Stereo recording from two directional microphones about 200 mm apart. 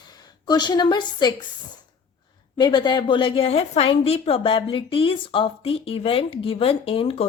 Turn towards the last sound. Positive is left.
turn(degrees=30)  # may be behind; listen again after turning